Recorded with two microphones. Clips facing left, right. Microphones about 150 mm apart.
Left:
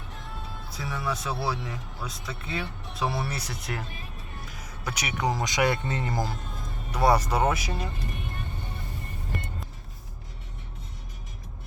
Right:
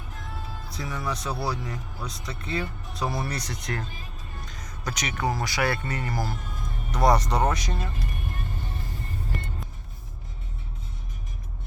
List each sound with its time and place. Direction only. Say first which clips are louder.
0.7 s speech: even; 5° left (ahead or behind); by 6.3 s 20° left (ahead or behind)
6.9 s speech: right 1 dB; 5° left (ahead or behind)